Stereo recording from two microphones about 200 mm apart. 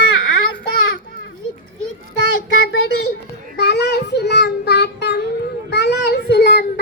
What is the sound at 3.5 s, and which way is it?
Child singing, 55° left (ahead or behind).